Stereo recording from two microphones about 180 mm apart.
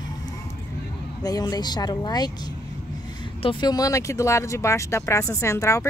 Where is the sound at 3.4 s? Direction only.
25° left (ahead or behind).